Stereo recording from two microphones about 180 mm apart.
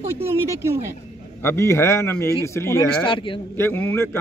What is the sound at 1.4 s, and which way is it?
A man's voice, 15° left (ahead or behind).